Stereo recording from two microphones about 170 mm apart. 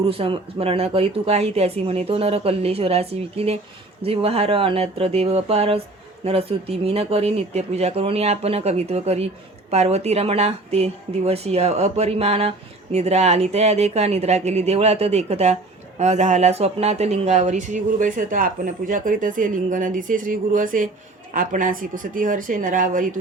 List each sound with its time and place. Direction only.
0.0 s speech: 35° right (ahead or behind); by 23.0 s 50° right (ahead or behind)